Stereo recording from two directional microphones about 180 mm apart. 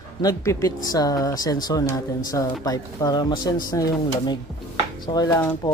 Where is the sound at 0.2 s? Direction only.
20° left (ahead or behind).